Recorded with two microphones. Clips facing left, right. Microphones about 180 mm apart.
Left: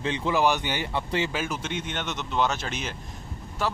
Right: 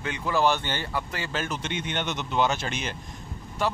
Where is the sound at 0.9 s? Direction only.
25° left (ahead or behind).